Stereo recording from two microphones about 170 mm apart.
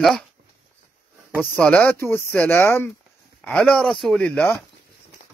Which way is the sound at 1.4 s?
10° left (ahead or behind).